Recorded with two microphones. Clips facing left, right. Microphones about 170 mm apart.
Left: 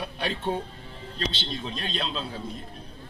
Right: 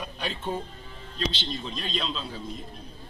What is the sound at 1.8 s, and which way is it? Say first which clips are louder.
Speech: even; 55° left (ahead or behind).